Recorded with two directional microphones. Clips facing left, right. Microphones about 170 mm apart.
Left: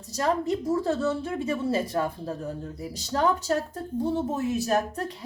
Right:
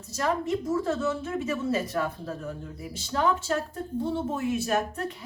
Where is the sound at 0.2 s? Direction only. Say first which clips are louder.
Left 2 dB; 35° left (ahead or behind).